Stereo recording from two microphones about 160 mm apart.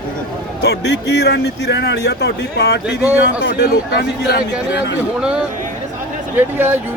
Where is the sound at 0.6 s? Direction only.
90° left.